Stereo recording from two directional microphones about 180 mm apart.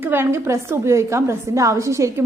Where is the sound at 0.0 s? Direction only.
10° right (ahead or behind).